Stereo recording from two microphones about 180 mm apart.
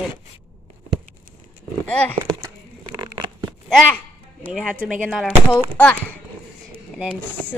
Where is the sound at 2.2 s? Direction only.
20° right (ahead or behind).